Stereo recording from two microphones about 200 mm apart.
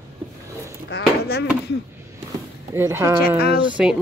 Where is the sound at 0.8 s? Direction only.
55° left (ahead or behind).